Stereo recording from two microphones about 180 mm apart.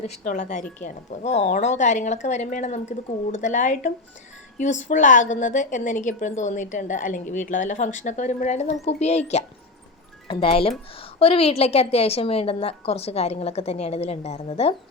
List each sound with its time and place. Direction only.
0.0 s a woman's voice: 40° left (ahead or behind)